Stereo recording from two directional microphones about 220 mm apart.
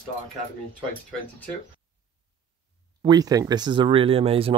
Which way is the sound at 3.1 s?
15° right (ahead or behind).